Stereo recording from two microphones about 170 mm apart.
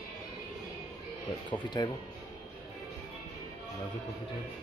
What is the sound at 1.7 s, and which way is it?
Speech, 20° left (ahead or behind).